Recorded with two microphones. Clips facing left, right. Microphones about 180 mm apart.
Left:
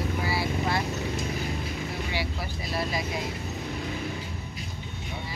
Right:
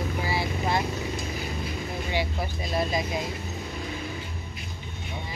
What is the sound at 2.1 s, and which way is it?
Vehicle, 20° right (ahead or behind).